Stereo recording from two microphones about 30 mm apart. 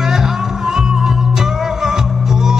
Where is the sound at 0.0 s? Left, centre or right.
Centre.